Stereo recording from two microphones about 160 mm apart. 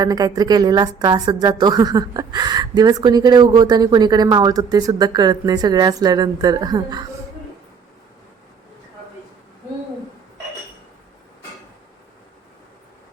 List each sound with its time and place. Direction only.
0.0 s speech: 25° right (ahead or behind)